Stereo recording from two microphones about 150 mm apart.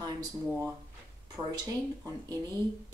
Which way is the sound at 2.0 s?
25° right (ahead or behind).